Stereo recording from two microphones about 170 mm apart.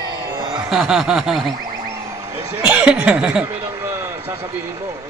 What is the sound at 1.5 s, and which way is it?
Boing, 25° right (ahead or behind).